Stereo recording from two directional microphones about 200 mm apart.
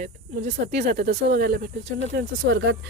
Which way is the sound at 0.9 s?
50° right (ahead or behind).